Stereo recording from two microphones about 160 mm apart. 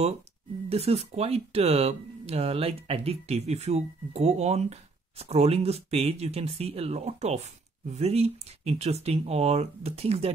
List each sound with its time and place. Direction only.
0.7 s speech: 40° right (ahead or behind)